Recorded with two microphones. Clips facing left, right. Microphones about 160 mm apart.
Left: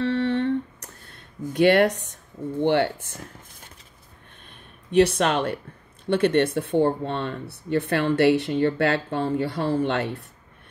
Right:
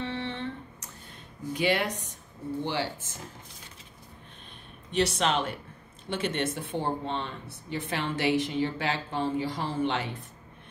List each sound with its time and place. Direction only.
0.0 s a sound: 65° left (ahead or behind)
1.5 s speech: 60° left (ahead or behind)
4.9 s speech: 55° left (ahead or behind)